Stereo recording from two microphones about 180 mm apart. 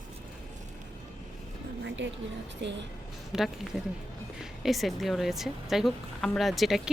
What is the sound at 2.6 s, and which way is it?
Speech, 75° right (ahead or behind).